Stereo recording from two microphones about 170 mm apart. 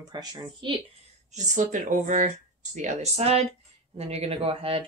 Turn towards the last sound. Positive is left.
turn(degrees=-35)  # may be behind; listen again after turning